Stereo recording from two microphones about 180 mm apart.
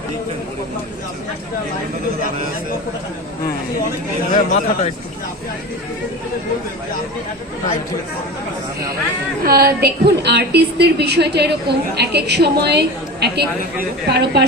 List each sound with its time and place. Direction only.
4.4 s speech: 45° left (ahead or behind)
9.4 s a woman's voice: 60° right (ahead or behind)